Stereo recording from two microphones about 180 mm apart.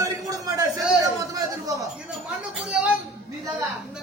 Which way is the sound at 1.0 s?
20° right (ahead or behind).